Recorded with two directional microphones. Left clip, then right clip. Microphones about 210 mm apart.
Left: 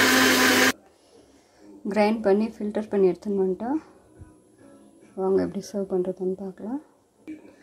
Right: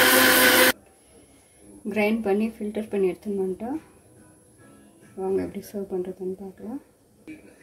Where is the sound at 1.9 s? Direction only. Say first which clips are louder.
Left 3 dB; 20° left (ahead or behind).